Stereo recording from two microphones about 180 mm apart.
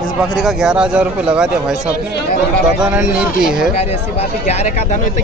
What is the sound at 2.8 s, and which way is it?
Speech, 5° right (ahead or behind).